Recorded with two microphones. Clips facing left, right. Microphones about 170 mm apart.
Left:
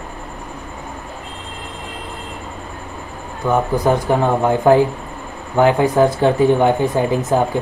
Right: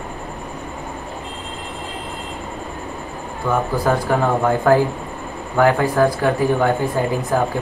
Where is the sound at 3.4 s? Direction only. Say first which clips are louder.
Left 3 dB; 20° left (ahead or behind).